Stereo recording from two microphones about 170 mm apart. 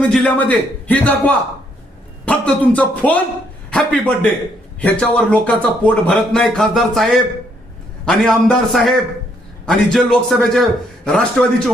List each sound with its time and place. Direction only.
0.0 s a man's voice: 10° left (ahead or behind)
2.2 s a man's voice: 5° left (ahead or behind)